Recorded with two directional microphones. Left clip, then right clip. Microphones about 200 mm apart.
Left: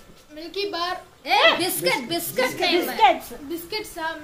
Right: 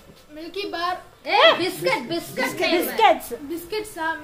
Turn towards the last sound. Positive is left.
turn(degrees=0)  # may be behind; listen again after turning